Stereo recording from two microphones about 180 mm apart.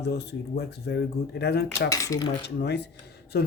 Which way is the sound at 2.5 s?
70° left (ahead or behind).